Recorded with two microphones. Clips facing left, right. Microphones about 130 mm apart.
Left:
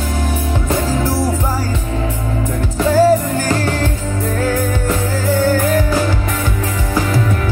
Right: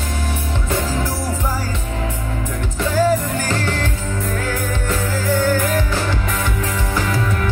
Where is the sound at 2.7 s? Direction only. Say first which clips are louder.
Left 6 dB; 40° left (ahead or behind).